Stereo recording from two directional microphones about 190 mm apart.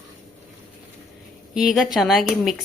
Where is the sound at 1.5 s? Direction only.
Centre (ahead or behind).